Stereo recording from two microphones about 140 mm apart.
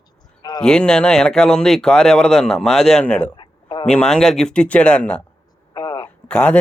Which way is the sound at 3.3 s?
35° left (ahead or behind).